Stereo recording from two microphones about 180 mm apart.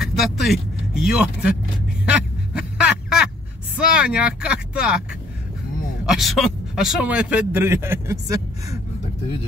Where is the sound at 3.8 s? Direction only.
5° right (ahead or behind).